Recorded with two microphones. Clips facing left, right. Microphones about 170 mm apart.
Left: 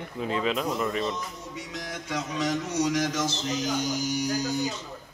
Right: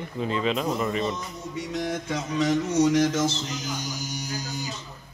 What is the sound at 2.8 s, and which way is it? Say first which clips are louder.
Speech: right 6 dB; 30° right (ahead or behind).